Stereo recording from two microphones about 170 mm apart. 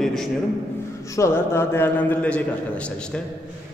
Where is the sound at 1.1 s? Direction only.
15° left (ahead or behind).